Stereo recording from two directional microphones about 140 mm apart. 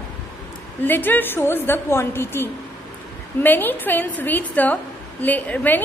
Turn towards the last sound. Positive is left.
turn(degrees=10)  # may be behind; listen again after turning